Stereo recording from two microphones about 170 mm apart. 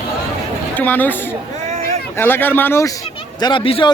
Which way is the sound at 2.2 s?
10° left (ahead or behind).